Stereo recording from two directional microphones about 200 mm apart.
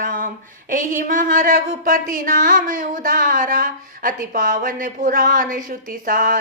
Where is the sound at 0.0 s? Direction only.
45° right (ahead or behind).